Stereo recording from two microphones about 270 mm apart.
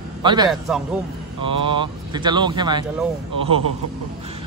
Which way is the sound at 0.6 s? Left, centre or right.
Centre.